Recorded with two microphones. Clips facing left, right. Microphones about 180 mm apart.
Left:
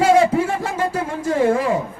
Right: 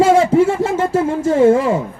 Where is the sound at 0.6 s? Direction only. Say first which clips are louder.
Right 6 dB; 25° right (ahead or behind).